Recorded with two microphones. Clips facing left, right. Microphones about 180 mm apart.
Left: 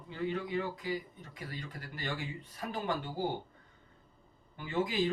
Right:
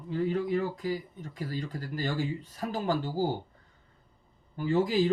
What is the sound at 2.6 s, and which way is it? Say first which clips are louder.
Speech: right 5 dB; 40° right (ahead or behind).